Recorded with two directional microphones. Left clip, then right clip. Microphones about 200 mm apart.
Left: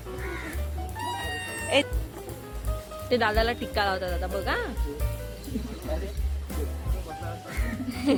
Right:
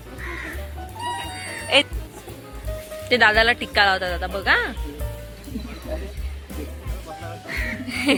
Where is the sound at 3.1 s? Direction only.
Centre (ahead or behind).